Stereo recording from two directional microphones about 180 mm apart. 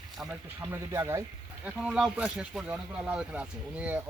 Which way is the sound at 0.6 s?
15° right (ahead or behind).